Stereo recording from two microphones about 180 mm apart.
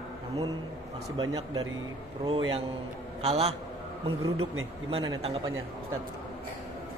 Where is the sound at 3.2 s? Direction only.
35° right (ahead or behind).